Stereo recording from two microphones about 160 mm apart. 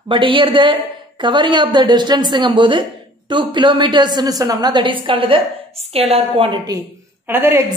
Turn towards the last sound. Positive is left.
turn(degrees=-15)  # may be behind; listen again after turning